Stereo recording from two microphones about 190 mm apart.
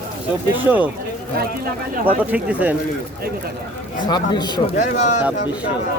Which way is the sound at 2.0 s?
10° right (ahead or behind).